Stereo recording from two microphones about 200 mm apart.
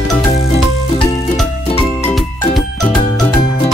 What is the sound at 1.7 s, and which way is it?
Music, 30° left (ahead or behind).